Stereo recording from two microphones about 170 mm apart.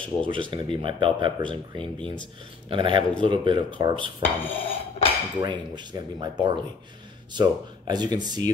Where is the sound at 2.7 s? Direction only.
30° right (ahead or behind).